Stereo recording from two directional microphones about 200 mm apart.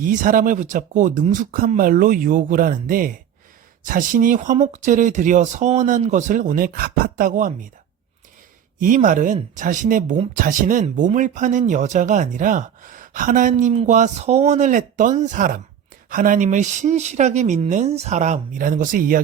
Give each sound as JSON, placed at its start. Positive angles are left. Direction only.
{"t": 0.0, "sound": "speech", "side_deg": -40}
{"t": 8.8, "sound": "speech", "side_deg": -40}